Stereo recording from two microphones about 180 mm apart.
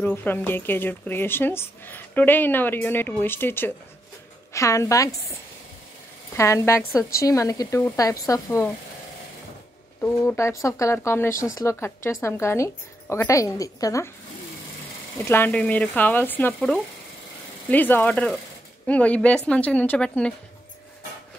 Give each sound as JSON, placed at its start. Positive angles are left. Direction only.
{"t": 0.0, "sound": "speech", "side_deg": 10}
{"t": 6.3, "sound": "speech", "side_deg": 15}
{"t": 10.0, "sound": "speech", "side_deg": 15}
{"t": 15.1, "sound": "speech", "side_deg": 10}